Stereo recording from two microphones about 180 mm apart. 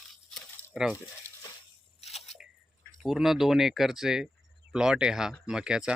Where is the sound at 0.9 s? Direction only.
20° left (ahead or behind).